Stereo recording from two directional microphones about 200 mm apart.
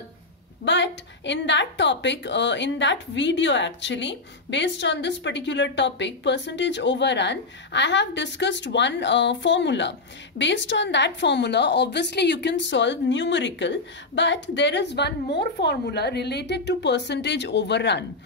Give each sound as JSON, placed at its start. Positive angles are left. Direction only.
{"t": 0.7, "sound": "a woman's voice", "side_deg": 65}